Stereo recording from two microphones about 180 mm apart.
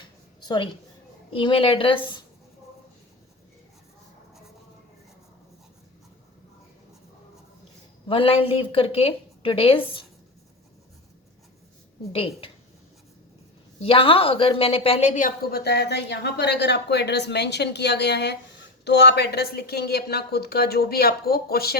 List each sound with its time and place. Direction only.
0.4 s a woman's voice: 25° left (ahead or behind)
8.0 s a woman's voice: 30° left (ahead or behind)
12.1 s a woman's voice: 30° left (ahead or behind)
13.8 s a woman's voice: 30° left (ahead or behind); by 21.8 s 60° left (ahead or behind)